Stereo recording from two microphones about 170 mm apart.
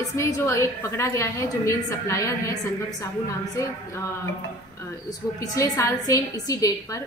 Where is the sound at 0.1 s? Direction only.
20° left (ahead or behind).